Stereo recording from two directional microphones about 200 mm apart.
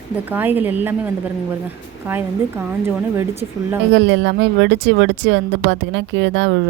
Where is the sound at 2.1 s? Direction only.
10° right (ahead or behind).